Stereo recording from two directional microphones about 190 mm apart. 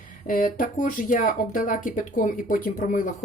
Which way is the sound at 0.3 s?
45° left (ahead or behind).